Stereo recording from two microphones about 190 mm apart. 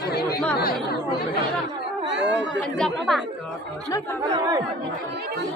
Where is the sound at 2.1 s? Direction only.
65° right (ahead or behind).